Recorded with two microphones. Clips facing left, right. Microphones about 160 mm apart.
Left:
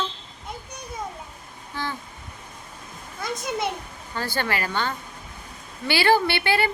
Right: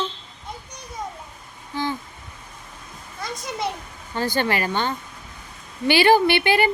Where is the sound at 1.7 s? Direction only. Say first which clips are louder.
Right 5 dB; 15° right (ahead or behind).